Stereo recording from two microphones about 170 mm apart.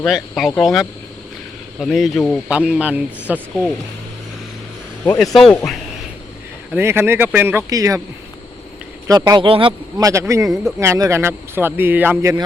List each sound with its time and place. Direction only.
0.0 s speech: centre (ahead or behind)
5.2 s speech: centre (ahead or behind)
6.7 s speech: 15° right (ahead or behind)
9.0 s speech: 20° right (ahead or behind)
10.1 s speech: 15° right (ahead or behind)